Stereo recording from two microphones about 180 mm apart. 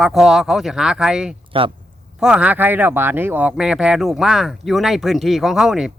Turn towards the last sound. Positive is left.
turn(degrees=-5)  # may be behind; listen again after turning